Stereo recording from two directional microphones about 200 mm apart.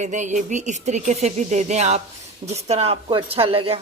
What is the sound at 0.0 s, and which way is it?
Speech, 35° right (ahead or behind).